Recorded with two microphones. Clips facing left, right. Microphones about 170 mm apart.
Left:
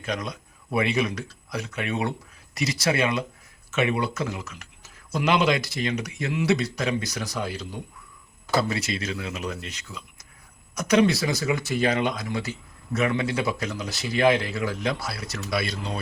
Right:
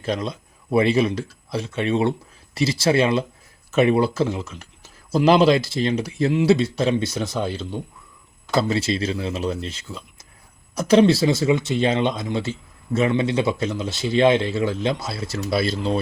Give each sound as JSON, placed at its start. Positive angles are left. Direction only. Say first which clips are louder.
{"t": 0.0, "sound": "speech", "louder": "right 5 dB", "side_deg": -30}